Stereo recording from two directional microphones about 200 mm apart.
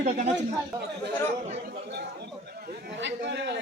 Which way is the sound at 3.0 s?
60° right (ahead or behind).